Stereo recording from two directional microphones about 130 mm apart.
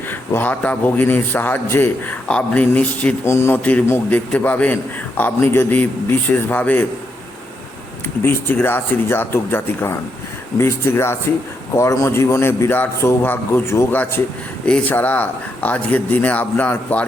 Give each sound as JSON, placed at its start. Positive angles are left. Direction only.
{"t": 0.1, "sound": "a man's voice", "side_deg": 15}
{"t": 8.2, "sound": "a man's voice", "side_deg": 15}